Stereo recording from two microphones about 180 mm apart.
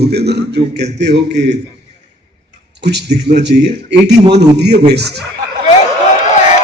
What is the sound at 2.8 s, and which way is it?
A man's voice, 70° right (ahead or behind).